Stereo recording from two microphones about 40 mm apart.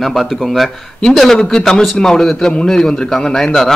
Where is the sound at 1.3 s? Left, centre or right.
Centre.